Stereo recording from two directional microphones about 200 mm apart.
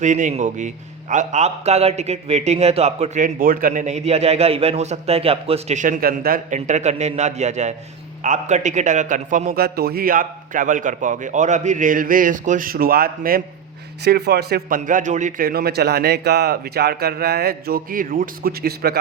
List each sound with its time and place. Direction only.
0.0 s a man's voice: 40° right (ahead or behind)